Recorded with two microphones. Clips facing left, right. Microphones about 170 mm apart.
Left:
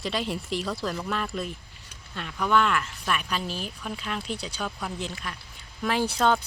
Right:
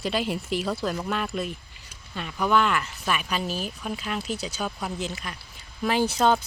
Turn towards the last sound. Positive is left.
turn(degrees=0)  # may be behind; listen again after turning